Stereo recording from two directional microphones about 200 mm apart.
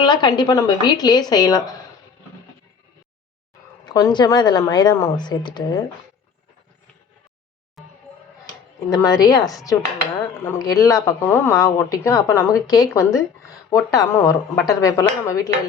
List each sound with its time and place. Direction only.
0.0 s a woman's voice: 20° left (ahead or behind)
3.8 s a woman's voice: 20° left (ahead or behind)
7.8 s music: centre (ahead or behind)
8.9 s speech: 20° left (ahead or behind)